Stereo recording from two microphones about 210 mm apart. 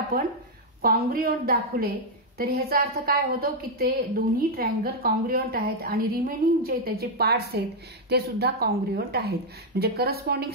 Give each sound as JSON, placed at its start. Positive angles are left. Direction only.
{"t": 0.1, "sound": "a woman's voice", "side_deg": -45}